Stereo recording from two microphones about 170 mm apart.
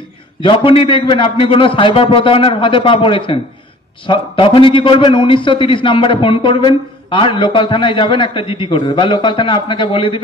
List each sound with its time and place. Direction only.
0.4 s a man's voice: 30° left (ahead or behind)